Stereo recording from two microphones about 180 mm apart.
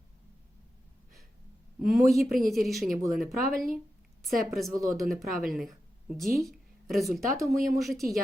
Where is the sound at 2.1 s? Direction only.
Centre (ahead or behind).